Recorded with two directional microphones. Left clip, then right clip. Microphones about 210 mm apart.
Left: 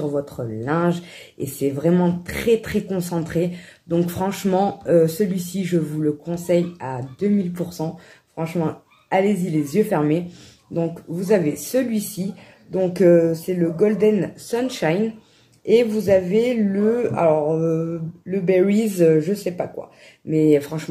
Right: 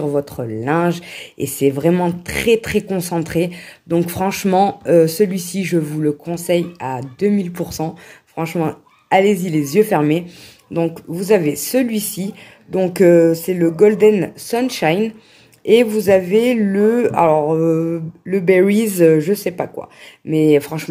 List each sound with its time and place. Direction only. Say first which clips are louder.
0.0 s speech: right 5 dB; 35° right (ahead or behind)